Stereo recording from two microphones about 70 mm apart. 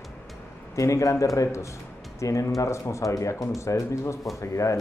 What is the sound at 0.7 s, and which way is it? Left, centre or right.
Speech, left.